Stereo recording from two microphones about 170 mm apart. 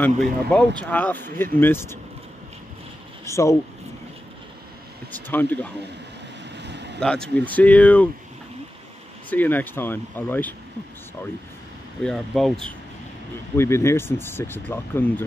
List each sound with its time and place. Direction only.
0.0 s speech: 5° left (ahead or behind)
3.3 s speech: 15° left (ahead or behind)
5.3 s speech: 10° left (ahead or behind)
6.5 s vehicle: 90° right
7.0 s speech: 5° left (ahead or behind)
9.3 s speech: 10° left (ahead or behind)
12.0 s speech: centre (ahead or behind)
13.6 s speech: 15° left (ahead or behind)